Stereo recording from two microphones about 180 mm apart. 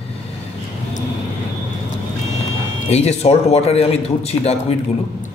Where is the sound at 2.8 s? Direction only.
35° left (ahead or behind).